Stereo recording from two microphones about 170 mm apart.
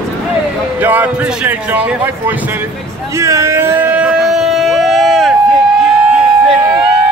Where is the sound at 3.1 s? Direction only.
15° right (ahead or behind); by 5.3 s centre (ahead or behind).